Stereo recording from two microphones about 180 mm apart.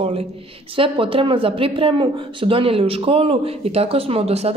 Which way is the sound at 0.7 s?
30° right (ahead or behind).